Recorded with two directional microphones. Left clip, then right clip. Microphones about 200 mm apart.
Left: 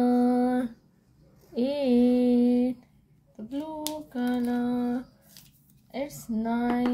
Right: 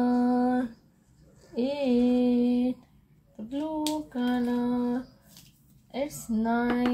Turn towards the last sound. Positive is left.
turn(degrees=0)  # may be behind; listen again after turning